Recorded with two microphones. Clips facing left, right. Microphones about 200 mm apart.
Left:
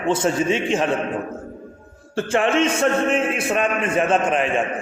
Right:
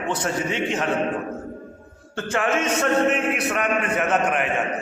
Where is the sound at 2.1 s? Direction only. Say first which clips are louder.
Left 4 dB; 30° left (ahead or behind).